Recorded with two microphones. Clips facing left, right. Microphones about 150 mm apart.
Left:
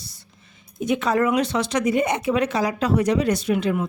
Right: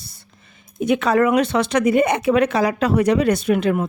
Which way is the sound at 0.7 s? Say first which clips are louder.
Right 4 dB; 65° right (ahead or behind).